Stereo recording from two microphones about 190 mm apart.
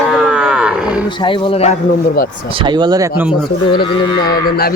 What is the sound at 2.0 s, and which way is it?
Speech, 50° left (ahead or behind).